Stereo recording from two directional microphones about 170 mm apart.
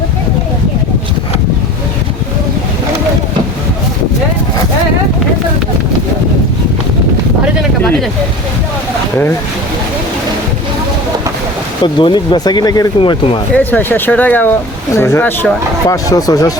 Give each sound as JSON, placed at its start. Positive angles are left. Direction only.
{"t": 11.8, "sound": "speech", "side_deg": 25}
{"t": 13.5, "sound": "speech", "side_deg": 10}